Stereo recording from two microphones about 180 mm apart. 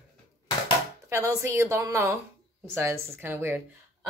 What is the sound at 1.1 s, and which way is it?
Speech, 15° right (ahead or behind).